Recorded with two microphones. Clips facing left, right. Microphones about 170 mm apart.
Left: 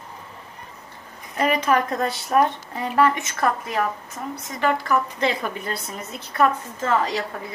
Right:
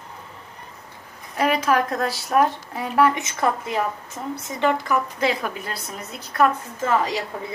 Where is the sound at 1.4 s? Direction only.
5° right (ahead or behind); by 5.0 s 20° right (ahead or behind).